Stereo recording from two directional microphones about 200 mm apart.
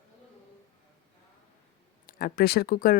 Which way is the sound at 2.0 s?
45° left (ahead or behind).